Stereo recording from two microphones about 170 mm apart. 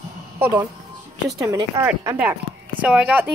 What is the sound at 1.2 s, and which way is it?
Speech, 20° right (ahead or behind).